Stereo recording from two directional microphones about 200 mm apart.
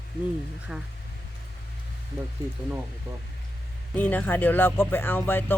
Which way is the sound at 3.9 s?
10° left (ahead or behind).